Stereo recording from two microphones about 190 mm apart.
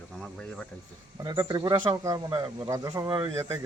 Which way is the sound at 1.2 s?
20° right (ahead or behind).